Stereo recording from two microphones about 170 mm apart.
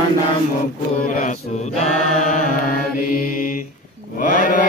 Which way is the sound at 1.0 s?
55° left (ahead or behind).